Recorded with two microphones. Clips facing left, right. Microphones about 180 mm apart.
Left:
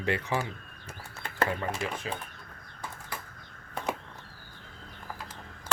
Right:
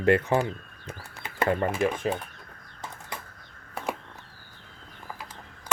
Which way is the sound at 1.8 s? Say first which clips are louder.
Right 8 dB; 50° right (ahead or behind).